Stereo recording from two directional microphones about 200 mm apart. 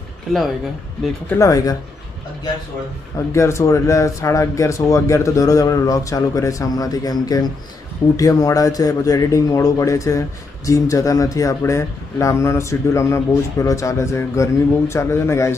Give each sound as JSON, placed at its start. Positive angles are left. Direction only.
{"t": 0.3, "sound": "speech", "side_deg": 0}
{"t": 1.3, "sound": "speech", "side_deg": 15}
{"t": 3.3, "sound": "speech", "side_deg": 15}